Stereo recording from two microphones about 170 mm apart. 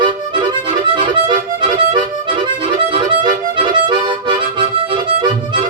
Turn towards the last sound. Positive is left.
turn(degrees=-30)  # may be behind; listen again after turning